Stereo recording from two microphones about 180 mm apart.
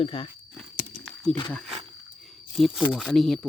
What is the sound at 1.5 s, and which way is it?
Speech, 5° left (ahead or behind).